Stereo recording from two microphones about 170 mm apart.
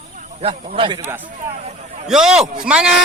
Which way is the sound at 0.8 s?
30° right (ahead or behind).